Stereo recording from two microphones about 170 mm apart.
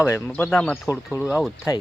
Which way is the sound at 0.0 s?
15° left (ahead or behind).